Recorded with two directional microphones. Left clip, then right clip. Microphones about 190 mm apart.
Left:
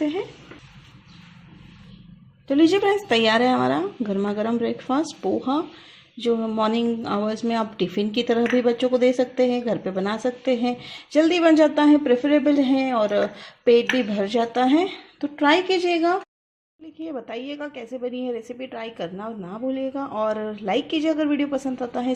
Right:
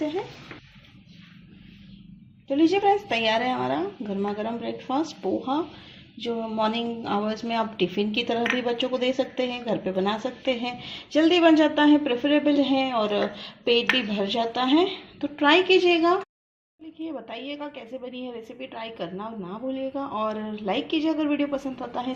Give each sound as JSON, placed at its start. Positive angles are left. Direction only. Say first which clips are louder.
{"t": 2.5, "sound": "a woman's voice", "louder": "left 2 dB", "side_deg": 50}